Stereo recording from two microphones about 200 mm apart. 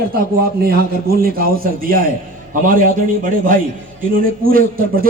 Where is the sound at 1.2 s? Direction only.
50° right (ahead or behind).